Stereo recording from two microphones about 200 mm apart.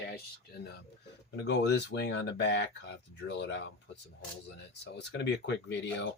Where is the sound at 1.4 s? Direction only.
60° left (ahead or behind).